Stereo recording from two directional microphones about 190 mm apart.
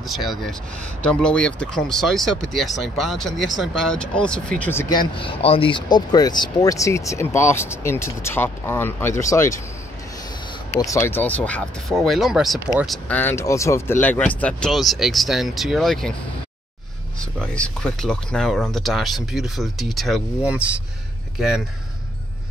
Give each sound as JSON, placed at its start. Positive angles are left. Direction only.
{"t": 0.0, "sound": "speech", "side_deg": 0}
{"t": 10.8, "sound": "speech", "side_deg": 15}
{"t": 12.5, "sound": "speech", "side_deg": -15}
{"t": 12.8, "sound": "speech", "side_deg": 5}
{"t": 17.2, "sound": "speech", "side_deg": 5}